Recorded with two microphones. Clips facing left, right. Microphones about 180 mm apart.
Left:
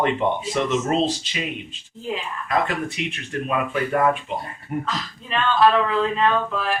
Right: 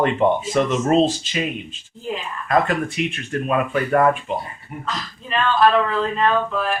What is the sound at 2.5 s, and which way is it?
Speech, 50° right (ahead or behind).